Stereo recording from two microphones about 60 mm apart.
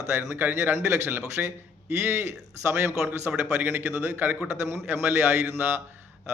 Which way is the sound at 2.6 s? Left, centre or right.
Right.